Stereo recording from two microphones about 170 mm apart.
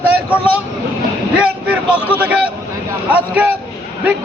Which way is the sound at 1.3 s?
5° right (ahead or behind).